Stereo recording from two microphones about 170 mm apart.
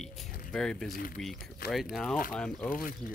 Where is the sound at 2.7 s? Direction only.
55° left (ahead or behind).